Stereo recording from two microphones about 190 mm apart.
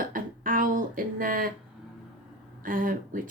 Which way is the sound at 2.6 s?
45° right (ahead or behind).